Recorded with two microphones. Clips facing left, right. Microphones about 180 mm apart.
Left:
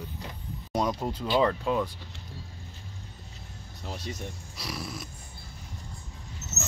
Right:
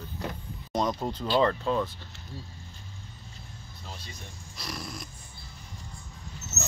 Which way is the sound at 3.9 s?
75° left (ahead or behind).